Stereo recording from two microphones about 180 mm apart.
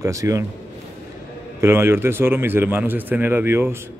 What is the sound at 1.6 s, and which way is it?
Speech, 15° right (ahead or behind).